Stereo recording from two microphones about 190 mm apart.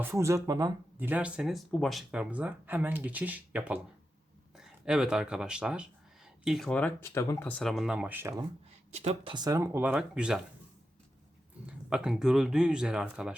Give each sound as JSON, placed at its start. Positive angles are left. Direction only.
{"t": 0.0, "sound": "speech", "side_deg": -15}
{"t": 7.6, "sound": "speech", "side_deg": 0}
{"t": 8.9, "sound": "speech", "side_deg": -35}
{"t": 9.3, "sound": "speech", "side_deg": -20}
{"t": 11.6, "sound": "speech", "side_deg": -5}